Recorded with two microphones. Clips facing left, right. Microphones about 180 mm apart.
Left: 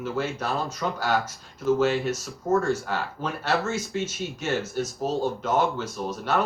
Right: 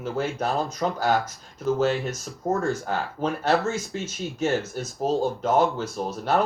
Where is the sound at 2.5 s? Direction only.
35° right (ahead or behind).